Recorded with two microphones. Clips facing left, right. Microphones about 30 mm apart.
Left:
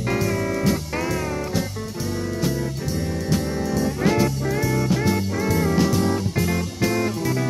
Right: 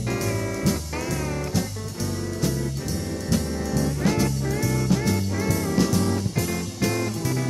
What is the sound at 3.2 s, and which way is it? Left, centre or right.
Music, centre.